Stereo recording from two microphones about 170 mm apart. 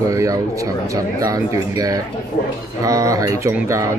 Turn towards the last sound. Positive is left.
turn(degrees=-15)  # may be behind; listen again after turning